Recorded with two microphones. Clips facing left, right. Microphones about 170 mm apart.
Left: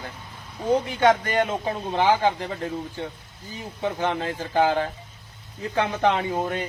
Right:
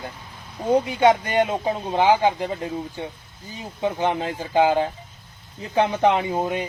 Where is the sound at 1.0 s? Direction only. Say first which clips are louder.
Right 1 dB; 15° right (ahead or behind).